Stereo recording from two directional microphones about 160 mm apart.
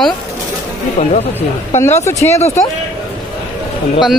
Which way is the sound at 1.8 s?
15° left (ahead or behind).